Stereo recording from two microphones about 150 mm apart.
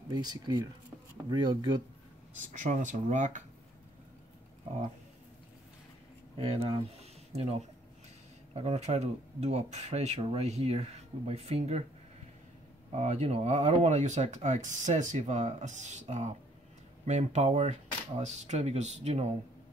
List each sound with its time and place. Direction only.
0.1 s speech: 25° right (ahead or behind)
2.5 s speech: 60° right (ahead or behind)
6.3 s speech: 40° right (ahead or behind)
12.9 s speech: 50° right (ahead or behind)